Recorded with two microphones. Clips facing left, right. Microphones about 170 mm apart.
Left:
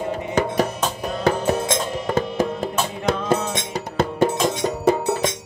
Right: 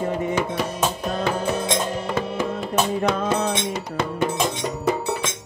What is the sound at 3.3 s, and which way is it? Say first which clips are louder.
Music: even; 45° left (ahead or behind).